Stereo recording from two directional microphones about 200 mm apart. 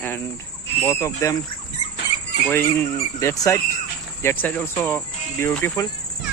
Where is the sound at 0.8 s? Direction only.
15° left (ahead or behind).